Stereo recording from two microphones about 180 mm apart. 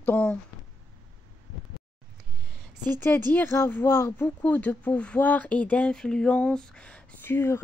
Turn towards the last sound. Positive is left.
turn(degrees=15)  # may be behind; listen again after turning